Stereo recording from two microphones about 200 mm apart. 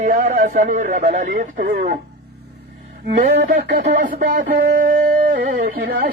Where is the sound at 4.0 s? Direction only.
40° right (ahead or behind).